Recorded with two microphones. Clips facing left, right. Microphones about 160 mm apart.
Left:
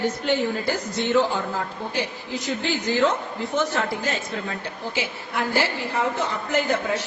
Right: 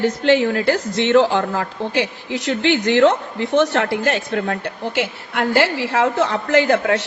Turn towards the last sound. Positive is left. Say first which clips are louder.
# right 7 dB
turn(degrees=-85)